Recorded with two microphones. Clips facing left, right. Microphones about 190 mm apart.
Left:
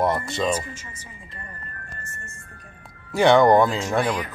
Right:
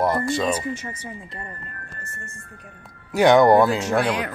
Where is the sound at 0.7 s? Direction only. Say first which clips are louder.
Right 9 dB; 65° right (ahead or behind).